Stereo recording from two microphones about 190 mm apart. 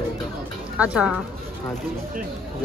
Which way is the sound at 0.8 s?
5° right (ahead or behind).